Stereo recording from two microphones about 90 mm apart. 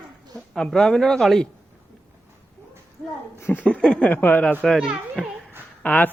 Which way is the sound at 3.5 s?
15° left (ahead or behind).